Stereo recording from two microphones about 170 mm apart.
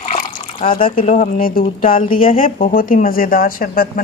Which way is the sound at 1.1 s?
55° left (ahead or behind).